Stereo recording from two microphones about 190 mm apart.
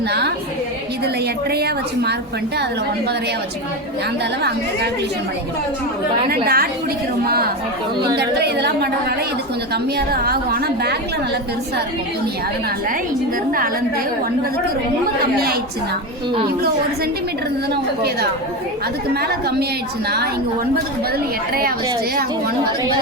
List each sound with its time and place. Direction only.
0.1 s a woman's voice: 60° right (ahead or behind)
6.3 s a woman's voice: 50° right (ahead or behind)
8.1 s a woman's voice: 60° right (ahead or behind)
19.1 s a woman's voice: 55° right (ahead or behind)